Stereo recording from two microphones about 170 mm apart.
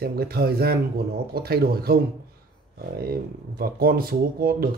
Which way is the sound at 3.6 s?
60° right (ahead or behind).